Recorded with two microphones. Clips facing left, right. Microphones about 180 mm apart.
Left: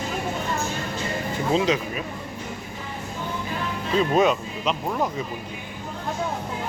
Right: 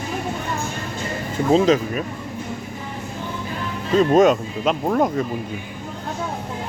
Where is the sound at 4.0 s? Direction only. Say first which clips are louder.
Right 6 dB; 45° right (ahead or behind).